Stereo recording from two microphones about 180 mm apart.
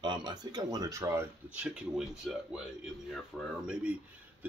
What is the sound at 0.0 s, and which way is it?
Speech, 25° right (ahead or behind).